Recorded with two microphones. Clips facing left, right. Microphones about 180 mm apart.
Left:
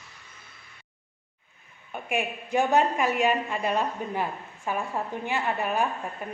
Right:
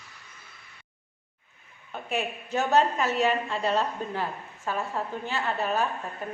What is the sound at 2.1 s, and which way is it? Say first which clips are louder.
A woman's voice: left 3 dB; 15° left (ahead or behind).